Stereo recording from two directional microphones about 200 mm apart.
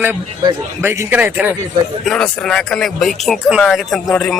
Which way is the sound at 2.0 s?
5° left (ahead or behind).